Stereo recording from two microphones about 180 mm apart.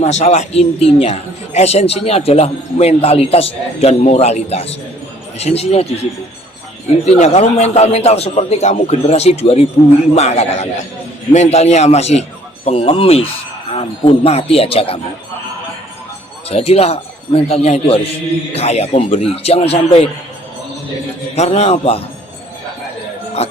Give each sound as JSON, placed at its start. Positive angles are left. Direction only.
{"t": 0.0, "sound": "a man's voice", "side_deg": 35}
{"t": 16.5, "sound": "a man's voice", "side_deg": 35}
{"t": 21.3, "sound": "a man's voice", "side_deg": 35}
{"t": 23.4, "sound": "speech", "side_deg": 35}